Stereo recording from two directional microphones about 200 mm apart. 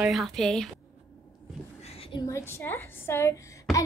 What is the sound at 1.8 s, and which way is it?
A woman's voice, 30° left (ahead or behind).